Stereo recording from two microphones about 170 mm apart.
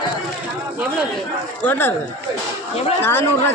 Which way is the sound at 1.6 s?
10° left (ahead or behind).